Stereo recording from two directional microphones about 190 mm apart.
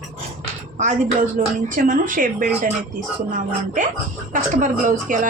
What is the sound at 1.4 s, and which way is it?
Speech, 45° right (ahead or behind).